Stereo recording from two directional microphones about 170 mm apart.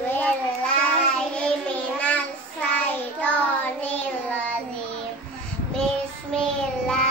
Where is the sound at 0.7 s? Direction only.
5° left (ahead or behind).